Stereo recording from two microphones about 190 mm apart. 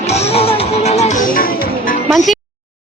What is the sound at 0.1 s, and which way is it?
Music, 35° left (ahead or behind).